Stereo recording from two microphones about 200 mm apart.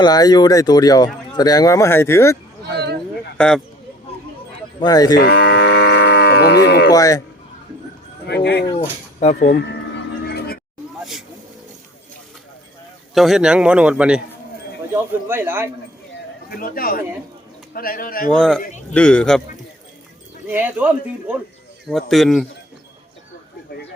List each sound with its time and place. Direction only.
0.0 s speech: 20° left (ahead or behind)
2.7 s a sound: 55° right (ahead or behind)
3.3 s speech: 5° left (ahead or behind)
4.8 s speech: 20° left (ahead or behind)
5.2 s livestock: 55° left (ahead or behind)
6.9 s speech: 15° left (ahead or behind)
8.3 s speech: 55° left (ahead or behind)
9.2 s speech: 35° left (ahead or behind)
13.1 s speech: centre (ahead or behind)
16.5 s a man's voice: 45° left (ahead or behind)
18.3 s speech: 5° left (ahead or behind)
20.5 s speech: 10° right (ahead or behind)